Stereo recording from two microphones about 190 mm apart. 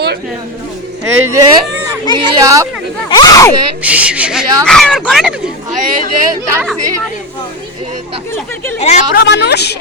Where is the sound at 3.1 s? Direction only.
20° left (ahead or behind).